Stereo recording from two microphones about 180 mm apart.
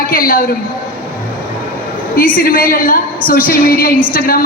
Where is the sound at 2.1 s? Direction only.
50° left (ahead or behind).